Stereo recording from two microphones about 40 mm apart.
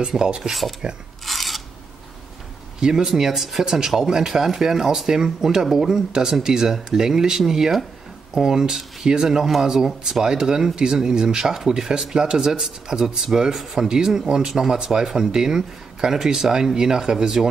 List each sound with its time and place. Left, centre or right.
0.0 s speech: right
0.4 s speech: centre
1.2 s filing: centre
2.8 s speech: centre